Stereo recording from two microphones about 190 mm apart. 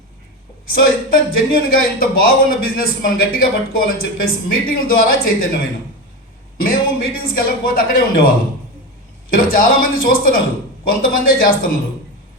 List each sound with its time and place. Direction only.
0.7 s speech: 50° left (ahead or behind)
6.6 s speech: 50° left (ahead or behind)
9.3 s speech: 50° left (ahead or behind)